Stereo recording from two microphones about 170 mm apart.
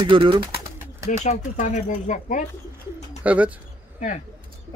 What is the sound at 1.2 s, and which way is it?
Speech, 40° left (ahead or behind).